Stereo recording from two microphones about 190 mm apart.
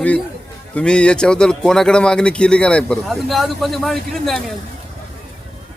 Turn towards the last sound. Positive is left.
turn(degrees=0)  # may be behind; listen again after turning